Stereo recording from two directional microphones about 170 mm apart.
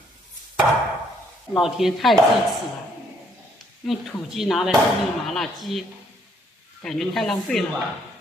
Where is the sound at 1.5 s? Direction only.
Centre (ahead or behind).